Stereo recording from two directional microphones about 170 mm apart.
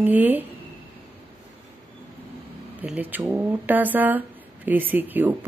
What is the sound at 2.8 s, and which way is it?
A woman's voice, 10° right (ahead or behind).